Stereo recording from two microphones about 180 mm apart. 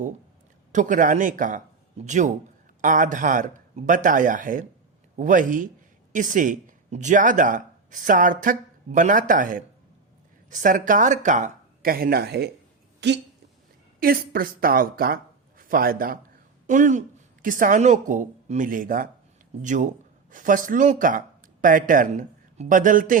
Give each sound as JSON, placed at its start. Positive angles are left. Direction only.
{"t": 0.7, "sound": "speech", "side_deg": -45}
{"t": 14.0, "sound": "speech", "side_deg": -55}